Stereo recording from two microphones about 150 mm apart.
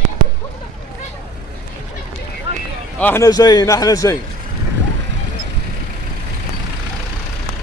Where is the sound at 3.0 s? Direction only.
10° left (ahead or behind).